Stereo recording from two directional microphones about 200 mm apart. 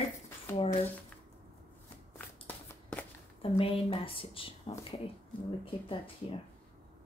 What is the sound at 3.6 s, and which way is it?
Speech, 25° left (ahead or behind).